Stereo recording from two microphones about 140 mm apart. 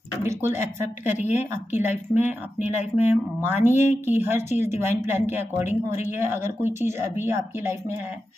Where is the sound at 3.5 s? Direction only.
60° left (ahead or behind).